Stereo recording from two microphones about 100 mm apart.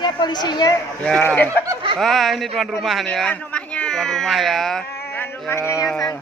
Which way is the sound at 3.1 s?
10° left (ahead or behind).